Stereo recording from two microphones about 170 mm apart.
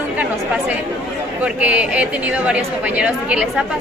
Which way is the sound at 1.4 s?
10° right (ahead or behind).